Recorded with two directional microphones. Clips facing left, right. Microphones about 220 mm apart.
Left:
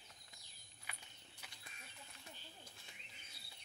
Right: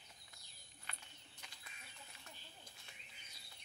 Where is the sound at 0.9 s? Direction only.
10° left (ahead or behind).